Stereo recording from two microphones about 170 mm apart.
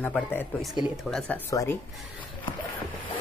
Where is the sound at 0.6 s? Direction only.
Centre (ahead or behind).